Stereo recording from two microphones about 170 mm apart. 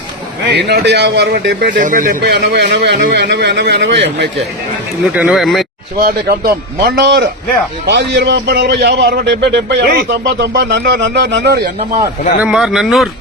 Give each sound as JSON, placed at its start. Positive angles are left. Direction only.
{"t": 0.4, "sound": "a man's voice", "side_deg": -80}
{"t": 1.7, "sound": "speech", "side_deg": -50}
{"t": 2.3, "sound": "speech", "side_deg": -80}
{"t": 5.1, "sound": "speech", "side_deg": -5}
{"t": 6.0, "sound": "a man's voice", "side_deg": -65}
{"t": 7.9, "sound": "a man's voice", "side_deg": -90}
{"t": 12.4, "sound": "speech", "side_deg": -5}